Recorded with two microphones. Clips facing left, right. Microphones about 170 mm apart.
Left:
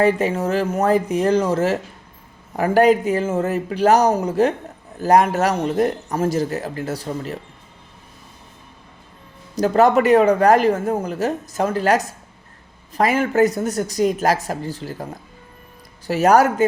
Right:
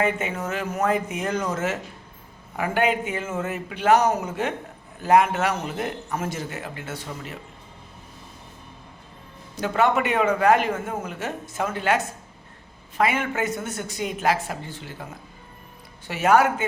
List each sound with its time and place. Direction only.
0.0 s speech: 35° left (ahead or behind)
9.6 s speech: 40° left (ahead or behind)